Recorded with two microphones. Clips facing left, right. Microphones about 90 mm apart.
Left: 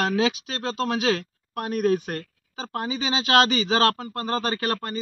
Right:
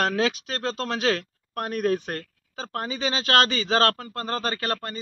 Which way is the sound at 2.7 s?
15° left (ahead or behind).